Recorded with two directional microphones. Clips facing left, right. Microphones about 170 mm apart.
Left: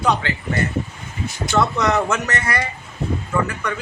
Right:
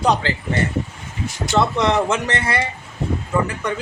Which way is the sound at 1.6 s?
25° right (ahead or behind).